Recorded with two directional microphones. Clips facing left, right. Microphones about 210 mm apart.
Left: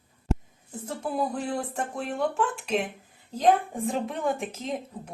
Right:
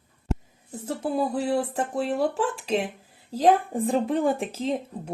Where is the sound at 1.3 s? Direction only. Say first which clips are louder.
Right 5 dB; 30° right (ahead or behind).